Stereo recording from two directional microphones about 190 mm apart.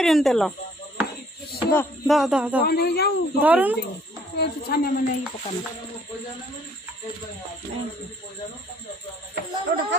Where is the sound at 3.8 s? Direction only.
60° left (ahead or behind).